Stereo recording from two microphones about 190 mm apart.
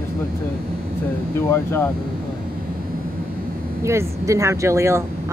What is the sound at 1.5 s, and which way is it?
Speech, 15° left (ahead or behind).